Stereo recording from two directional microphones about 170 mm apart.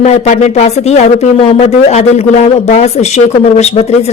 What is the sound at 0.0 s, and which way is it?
Speech, 45° left (ahead or behind).